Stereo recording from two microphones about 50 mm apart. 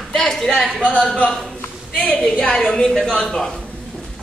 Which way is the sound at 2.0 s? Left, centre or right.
Left.